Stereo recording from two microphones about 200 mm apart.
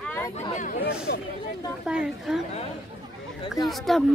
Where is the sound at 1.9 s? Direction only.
5° right (ahead or behind).